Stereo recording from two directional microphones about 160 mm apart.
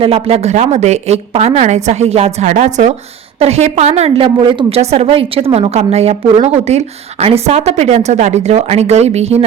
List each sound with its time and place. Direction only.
0.0 s a woman's voice: 35° right (ahead or behind)